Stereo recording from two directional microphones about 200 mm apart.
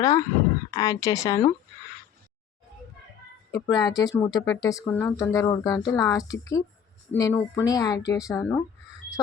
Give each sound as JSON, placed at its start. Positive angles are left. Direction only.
{"t": 0.0, "sound": "speech", "side_deg": 15}
{"t": 3.5, "sound": "speech", "side_deg": 20}